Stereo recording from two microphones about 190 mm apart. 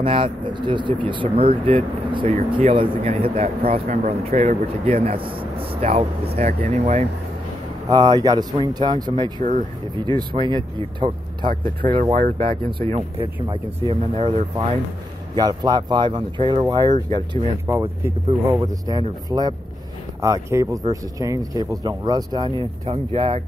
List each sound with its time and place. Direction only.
0.0 s speech: 25° right (ahead or behind)
7.9 s speech: 20° right (ahead or behind)
9.4 s speech: 40° right (ahead or behind)
9.9 s speech: 25° right (ahead or behind)
12.0 s speech: 45° right (ahead or behind)
13.5 s speech: 25° right (ahead or behind)
17.6 s speech: 10° right (ahead or behind); by 23.4 s 30° right (ahead or behind)